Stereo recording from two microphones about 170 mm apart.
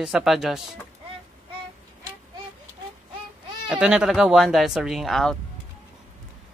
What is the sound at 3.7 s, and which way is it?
Speech, 5° right (ahead or behind).